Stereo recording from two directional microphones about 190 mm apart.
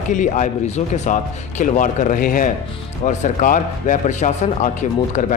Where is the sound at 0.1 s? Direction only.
40° left (ahead or behind).